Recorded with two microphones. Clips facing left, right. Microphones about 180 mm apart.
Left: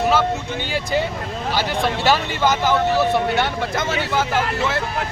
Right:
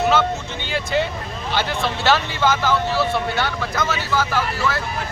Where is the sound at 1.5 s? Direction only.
15° left (ahead or behind).